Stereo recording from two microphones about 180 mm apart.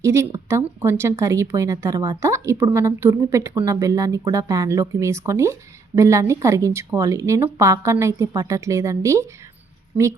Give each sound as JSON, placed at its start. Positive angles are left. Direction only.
{"t": 0.0, "sound": "a woman's voice", "side_deg": -15}